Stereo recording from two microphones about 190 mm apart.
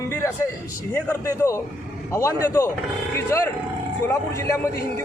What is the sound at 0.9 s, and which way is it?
A man's voice, 10° left (ahead or behind).